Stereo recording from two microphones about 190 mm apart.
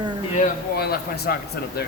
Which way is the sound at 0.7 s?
55° left (ahead or behind).